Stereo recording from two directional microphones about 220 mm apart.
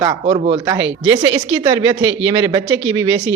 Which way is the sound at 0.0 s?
20° right (ahead or behind).